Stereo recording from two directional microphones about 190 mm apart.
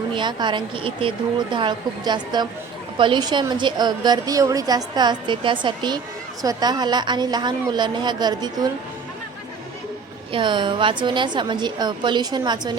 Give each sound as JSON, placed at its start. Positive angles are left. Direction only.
{"t": 0.1, "sound": "a woman's voice", "side_deg": -25}
{"t": 10.3, "sound": "a woman's voice", "side_deg": -25}